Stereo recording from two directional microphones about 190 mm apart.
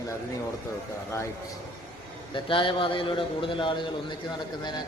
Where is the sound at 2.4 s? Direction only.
25° left (ahead or behind).